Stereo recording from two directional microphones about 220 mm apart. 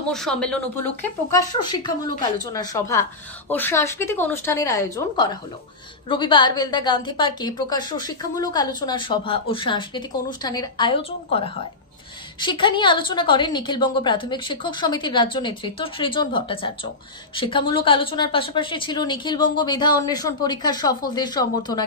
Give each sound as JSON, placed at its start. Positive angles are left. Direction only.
{"t": 0.1, "sound": "speech", "side_deg": 5}
{"t": 1.3, "sound": "a woman's voice", "side_deg": 20}